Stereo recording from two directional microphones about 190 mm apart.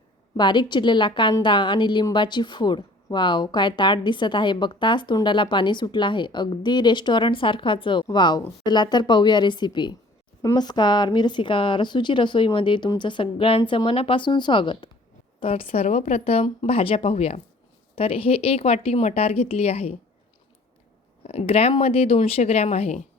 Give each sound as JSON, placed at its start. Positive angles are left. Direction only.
{"t": 0.3, "sound": "a woman's voice", "side_deg": 25}
{"t": 21.2, "sound": "a woman's voice", "side_deg": 30}